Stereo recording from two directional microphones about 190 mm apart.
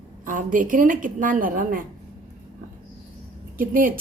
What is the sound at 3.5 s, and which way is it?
Speech, 45° right (ahead or behind).